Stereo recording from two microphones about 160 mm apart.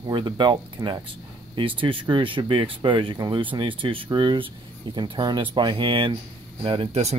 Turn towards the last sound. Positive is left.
turn(degrees=-40)  # may be behind; listen again after turning